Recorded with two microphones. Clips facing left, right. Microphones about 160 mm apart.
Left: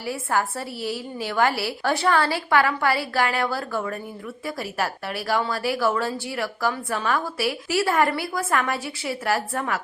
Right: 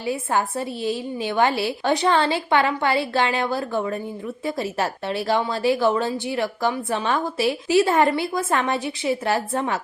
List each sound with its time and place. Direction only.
0.0 s a woman's voice: 20° right (ahead or behind)